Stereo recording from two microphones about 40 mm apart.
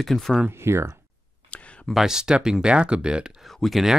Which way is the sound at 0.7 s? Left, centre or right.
Right.